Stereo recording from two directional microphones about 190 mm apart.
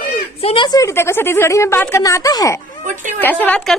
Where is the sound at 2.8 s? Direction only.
40° right (ahead or behind).